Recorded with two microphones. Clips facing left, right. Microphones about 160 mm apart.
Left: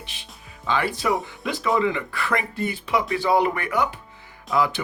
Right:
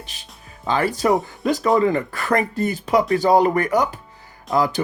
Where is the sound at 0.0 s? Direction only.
40° right (ahead or behind).